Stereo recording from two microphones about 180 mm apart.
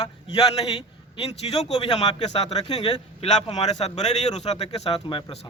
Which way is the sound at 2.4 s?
25° left (ahead or behind).